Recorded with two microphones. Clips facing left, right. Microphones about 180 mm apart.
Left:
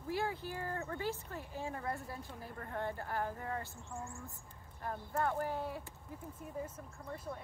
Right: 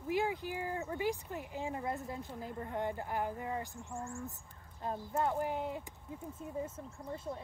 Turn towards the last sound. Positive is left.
turn(degrees=-25)  # may be behind; listen again after turning